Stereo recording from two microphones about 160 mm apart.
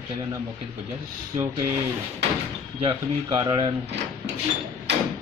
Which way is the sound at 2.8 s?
30° right (ahead or behind).